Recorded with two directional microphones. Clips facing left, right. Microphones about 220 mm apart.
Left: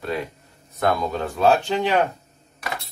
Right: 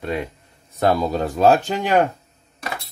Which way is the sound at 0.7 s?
30° right (ahead or behind).